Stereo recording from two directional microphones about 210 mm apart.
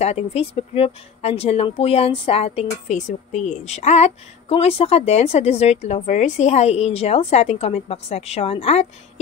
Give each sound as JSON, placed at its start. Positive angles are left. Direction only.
{"t": 0.0, "sound": "speech", "side_deg": 30}